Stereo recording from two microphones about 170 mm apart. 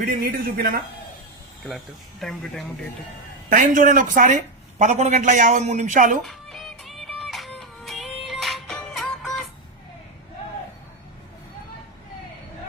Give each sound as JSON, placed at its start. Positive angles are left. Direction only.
{"t": 0.0, "sound": "a man's voice", "side_deg": -60}
{"t": 2.2, "sound": "speech", "side_deg": 0}
{"t": 3.5, "sound": "a man's voice", "side_deg": -50}
{"t": 6.2, "sound": "music", "side_deg": 0}